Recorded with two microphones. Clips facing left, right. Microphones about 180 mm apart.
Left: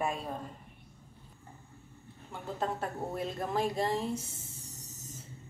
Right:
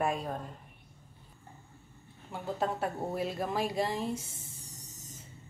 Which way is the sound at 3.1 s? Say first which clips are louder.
Right 1 dB; 5° right (ahead or behind).